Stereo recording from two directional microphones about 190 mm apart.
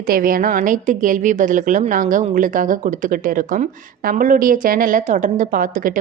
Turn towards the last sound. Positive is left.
turn(degrees=-45)  # may be behind; listen again after turning